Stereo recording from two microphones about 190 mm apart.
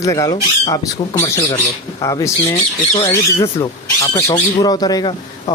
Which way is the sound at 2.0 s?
15° left (ahead or behind).